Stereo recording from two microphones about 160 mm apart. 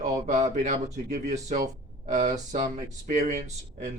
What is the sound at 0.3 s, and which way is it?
Speech, 50° right (ahead or behind).